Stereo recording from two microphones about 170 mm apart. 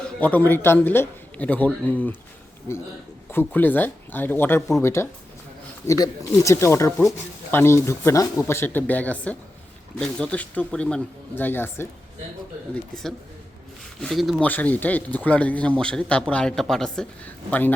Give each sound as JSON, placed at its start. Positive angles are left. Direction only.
{"t": 0.2, "sound": "speech", "side_deg": 10}
{"t": 3.3, "sound": "a man's voice", "side_deg": 10}